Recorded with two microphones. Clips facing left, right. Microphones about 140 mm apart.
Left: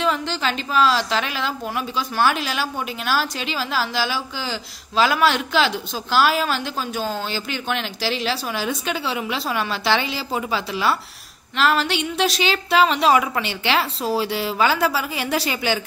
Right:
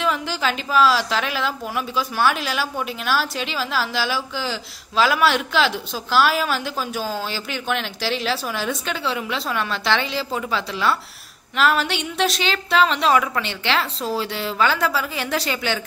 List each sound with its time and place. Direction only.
0.0 s a woman's voice: 5° right (ahead or behind)
11.5 s a woman's voice: centre (ahead or behind)